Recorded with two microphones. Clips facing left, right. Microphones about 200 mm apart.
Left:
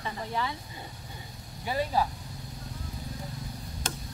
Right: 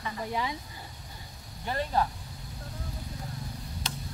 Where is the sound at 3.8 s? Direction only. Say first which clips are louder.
Left 3 dB; 50° left (ahead or behind).